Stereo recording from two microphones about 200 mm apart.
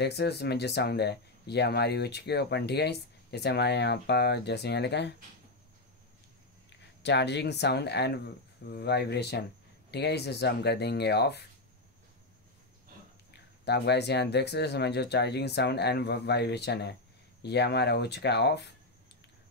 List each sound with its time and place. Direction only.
0.0 s speech: 55° left (ahead or behind)
7.0 s speech: 60° left (ahead or behind)
13.7 s speech: 55° left (ahead or behind)